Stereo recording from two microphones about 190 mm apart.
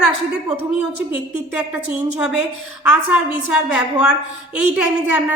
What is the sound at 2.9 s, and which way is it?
Speech, 90° left.